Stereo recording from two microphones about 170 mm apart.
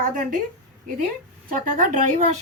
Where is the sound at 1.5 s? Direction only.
50° right (ahead or behind).